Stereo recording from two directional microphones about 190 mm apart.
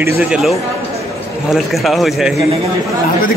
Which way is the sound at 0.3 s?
Centre (ahead or behind).